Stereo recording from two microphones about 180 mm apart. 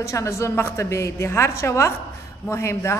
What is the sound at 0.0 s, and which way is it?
A woman's voice, 15° left (ahead or behind).